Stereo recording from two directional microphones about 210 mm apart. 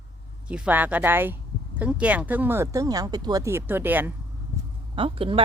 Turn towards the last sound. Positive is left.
turn(degrees=-25)  # may be behind; listen again after turning